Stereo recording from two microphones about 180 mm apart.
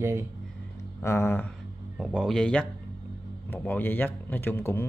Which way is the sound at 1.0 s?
15° left (ahead or behind).